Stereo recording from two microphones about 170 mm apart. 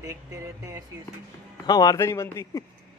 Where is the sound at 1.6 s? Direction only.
20° left (ahead or behind).